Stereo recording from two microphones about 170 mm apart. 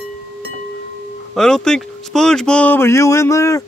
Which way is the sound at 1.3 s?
5° left (ahead or behind).